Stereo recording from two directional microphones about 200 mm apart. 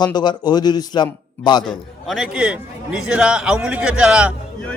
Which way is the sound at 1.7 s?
Centre (ahead or behind).